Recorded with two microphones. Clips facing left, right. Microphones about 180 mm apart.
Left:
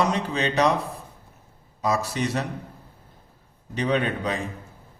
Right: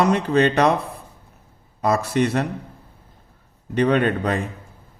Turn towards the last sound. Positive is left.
turn(degrees=-55)  # may be behind; listen again after turning